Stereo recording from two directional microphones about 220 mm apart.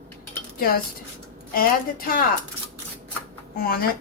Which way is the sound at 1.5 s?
40° left (ahead or behind).